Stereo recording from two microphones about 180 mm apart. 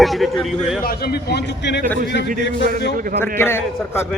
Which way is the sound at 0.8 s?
55° left (ahead or behind).